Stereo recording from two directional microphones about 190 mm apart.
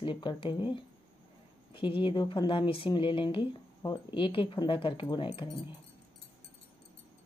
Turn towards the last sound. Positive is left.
turn(degrees=25)  # may be behind; listen again after turning